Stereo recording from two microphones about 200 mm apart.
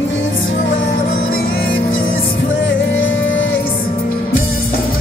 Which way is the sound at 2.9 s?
70° left (ahead or behind).